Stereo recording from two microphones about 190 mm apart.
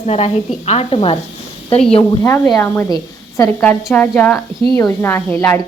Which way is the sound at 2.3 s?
15° left (ahead or behind).